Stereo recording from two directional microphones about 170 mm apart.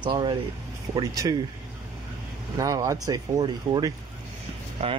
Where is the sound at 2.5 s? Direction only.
20° right (ahead or behind).